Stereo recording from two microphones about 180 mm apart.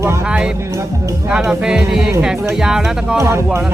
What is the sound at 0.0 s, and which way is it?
Speech, 15° right (ahead or behind).